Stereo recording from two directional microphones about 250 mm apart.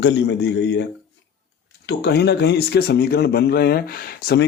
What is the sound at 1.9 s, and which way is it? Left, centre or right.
Speech, left.